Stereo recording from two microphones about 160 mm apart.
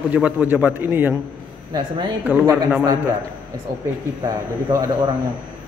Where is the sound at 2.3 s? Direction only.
10° right (ahead or behind).